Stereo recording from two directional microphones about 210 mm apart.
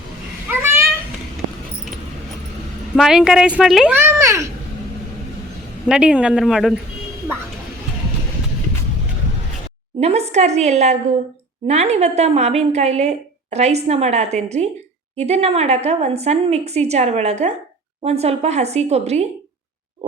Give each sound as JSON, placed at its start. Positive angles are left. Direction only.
{"t": 0.5, "sound": "a sound", "side_deg": -10}
{"t": 2.9, "sound": "a child's voice", "side_deg": -5}
{"t": 5.9, "sound": "a child's voice", "side_deg": -5}
{"t": 10.0, "sound": "a woman's voice", "side_deg": -30}